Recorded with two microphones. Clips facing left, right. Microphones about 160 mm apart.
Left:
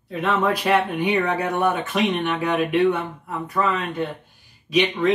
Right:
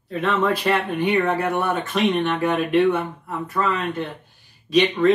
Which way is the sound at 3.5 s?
15° left (ahead or behind).